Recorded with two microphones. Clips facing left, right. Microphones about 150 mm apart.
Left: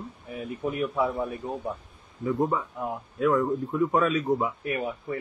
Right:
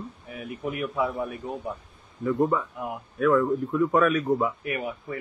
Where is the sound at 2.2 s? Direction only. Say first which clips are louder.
Right 2 dB; 20° left (ahead or behind).